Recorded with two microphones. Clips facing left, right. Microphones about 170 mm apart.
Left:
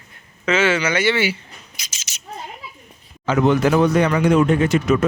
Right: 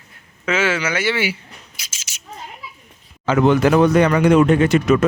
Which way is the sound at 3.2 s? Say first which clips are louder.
Right 2 dB; 65° right (ahead or behind).